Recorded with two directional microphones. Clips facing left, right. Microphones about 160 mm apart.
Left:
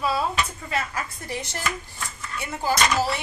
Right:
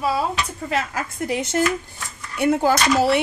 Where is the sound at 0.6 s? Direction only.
80° right.